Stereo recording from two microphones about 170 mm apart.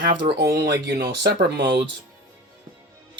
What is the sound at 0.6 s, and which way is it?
Speech, 75° right (ahead or behind).